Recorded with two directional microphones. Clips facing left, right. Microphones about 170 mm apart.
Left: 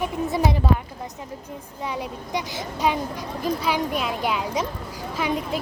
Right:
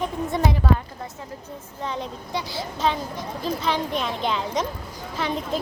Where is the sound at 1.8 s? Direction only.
10° left (ahead or behind).